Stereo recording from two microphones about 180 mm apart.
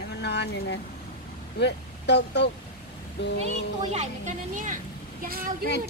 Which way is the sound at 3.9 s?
45° right (ahead or behind).